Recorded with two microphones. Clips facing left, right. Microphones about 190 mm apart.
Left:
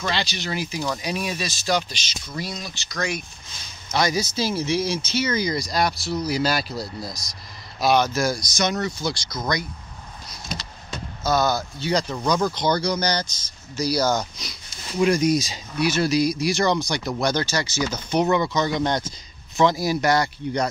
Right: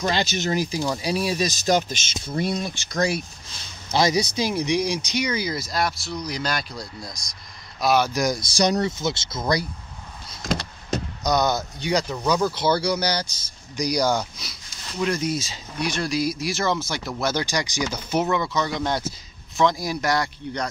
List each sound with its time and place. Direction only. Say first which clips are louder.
0.0 s speech: right 4 dB; 45° right (ahead or behind)
3.9 s speech: right 2 dB; 25° right (ahead or behind); by 8.1 s 5° right (ahead or behind)
8.1 s speech: even; 20° right (ahead or behind)
8.5 s speech: right 3 dB; 35° right (ahead or behind)
8.9 s speech: right 1 dB; 20° right (ahead or behind)
10.4 s power windows: right 8 dB; 90° right
11.2 s speech: left 1 dB; 20° right (ahead or behind)
14.9 s speech: left 5 dB; 10° left (ahead or behind)